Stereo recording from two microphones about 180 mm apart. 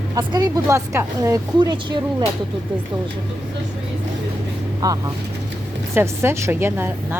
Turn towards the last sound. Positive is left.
turn(degrees=-10)  # may be behind; listen again after turning